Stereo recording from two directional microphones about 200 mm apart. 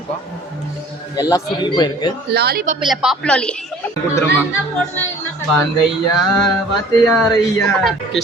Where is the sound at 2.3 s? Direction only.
50° right (ahead or behind).